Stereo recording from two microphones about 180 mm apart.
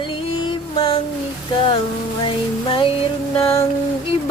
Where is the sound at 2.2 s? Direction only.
30° left (ahead or behind).